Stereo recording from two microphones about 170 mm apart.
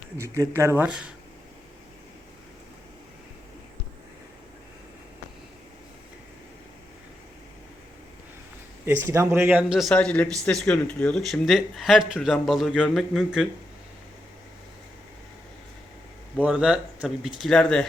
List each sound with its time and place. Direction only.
0.2 s speech: 15° right (ahead or behind)
0.9 s speech: 5° right (ahead or behind)
8.9 s speech: 15° right (ahead or behind)
16.4 s speech: 5° right (ahead or behind)